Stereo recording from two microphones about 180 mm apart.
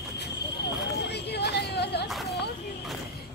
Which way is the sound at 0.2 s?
70° left (ahead or behind).